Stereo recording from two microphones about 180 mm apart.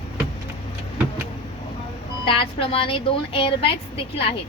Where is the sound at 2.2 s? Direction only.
30° left (ahead or behind).